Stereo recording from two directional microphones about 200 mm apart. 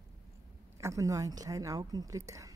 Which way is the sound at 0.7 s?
15° right (ahead or behind).